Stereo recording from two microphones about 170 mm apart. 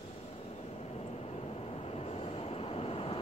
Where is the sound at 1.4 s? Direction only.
30° left (ahead or behind).